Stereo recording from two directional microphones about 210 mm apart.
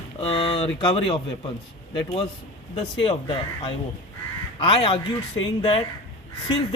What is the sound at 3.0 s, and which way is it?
A man's voice, 25° left (ahead or behind).